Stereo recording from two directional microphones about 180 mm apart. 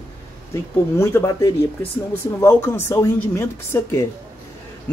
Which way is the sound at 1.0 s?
15° left (ahead or behind).